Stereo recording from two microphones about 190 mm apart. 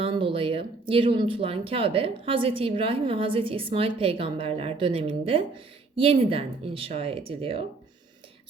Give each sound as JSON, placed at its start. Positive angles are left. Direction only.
{"t": 0.0, "sound": "speech", "side_deg": -25}